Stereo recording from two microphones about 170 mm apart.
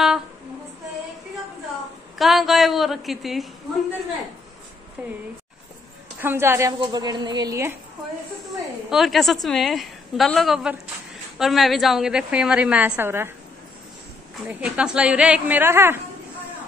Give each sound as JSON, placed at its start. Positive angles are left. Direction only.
{"t": 2.1, "sound": "a woman's voice", "side_deg": 0}
{"t": 5.0, "sound": "a woman's voice", "side_deg": -10}
{"t": 6.2, "sound": "a woman's voice", "side_deg": -15}
{"t": 6.8, "sound": "a woman's voice", "side_deg": -25}
{"t": 8.9, "sound": "a woman's voice", "side_deg": 0}
{"t": 14.5, "sound": "a woman's voice", "side_deg": -5}